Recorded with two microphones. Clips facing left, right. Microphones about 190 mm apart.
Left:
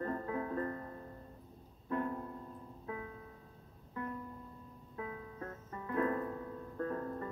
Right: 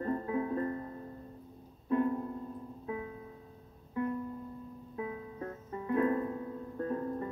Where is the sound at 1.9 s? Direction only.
20° right (ahead or behind).